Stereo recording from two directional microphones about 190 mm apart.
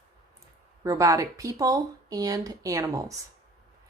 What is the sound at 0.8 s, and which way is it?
Speech, 15° right (ahead or behind).